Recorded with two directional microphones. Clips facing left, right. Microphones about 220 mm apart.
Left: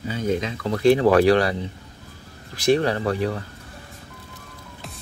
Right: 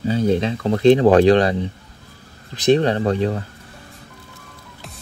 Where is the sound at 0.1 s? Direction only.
30° right (ahead or behind).